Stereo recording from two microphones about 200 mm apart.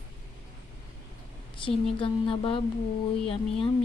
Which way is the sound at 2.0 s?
25° left (ahead or behind).